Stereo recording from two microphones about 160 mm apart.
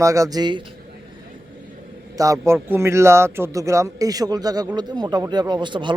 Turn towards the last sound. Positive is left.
turn(degrees=-30)  # may be behind; listen again after turning